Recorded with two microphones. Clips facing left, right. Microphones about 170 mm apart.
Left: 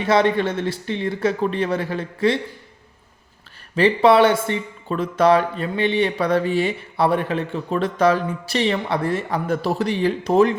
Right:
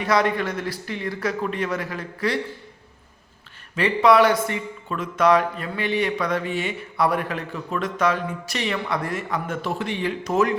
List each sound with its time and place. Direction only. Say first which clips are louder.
0.0 s speech: left 4 dB; 25° left (ahead or behind)
3.8 s speech: left 3 dB; 30° left (ahead or behind)